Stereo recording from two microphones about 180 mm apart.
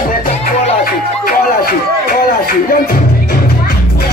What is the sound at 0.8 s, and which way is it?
Music, 55° left (ahead or behind).